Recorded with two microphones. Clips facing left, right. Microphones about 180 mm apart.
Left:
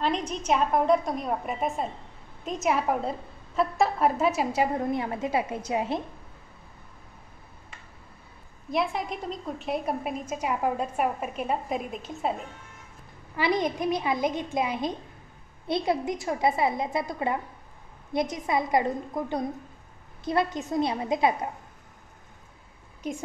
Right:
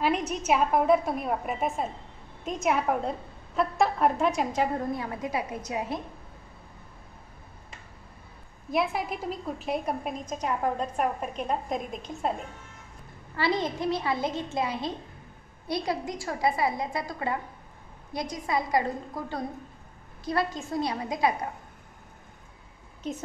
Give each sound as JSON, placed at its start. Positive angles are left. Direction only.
{"t": 0.0, "sound": "a woman's voice", "side_deg": -10}
{"t": 4.7, "sound": "a woman's voice", "side_deg": 20}
{"t": 8.6, "sound": "a woman's voice", "side_deg": 0}
{"t": 13.4, "sound": "a woman's voice", "side_deg": 15}
{"t": 23.0, "sound": "a woman's voice", "side_deg": 10}